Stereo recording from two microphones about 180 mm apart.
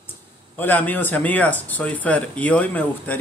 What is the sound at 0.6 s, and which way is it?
Speech, 10° left (ahead or behind).